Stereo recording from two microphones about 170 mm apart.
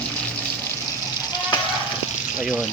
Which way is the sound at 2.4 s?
5° right (ahead or behind).